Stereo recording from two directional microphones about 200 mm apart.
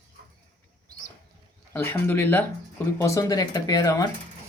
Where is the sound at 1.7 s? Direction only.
10° left (ahead or behind).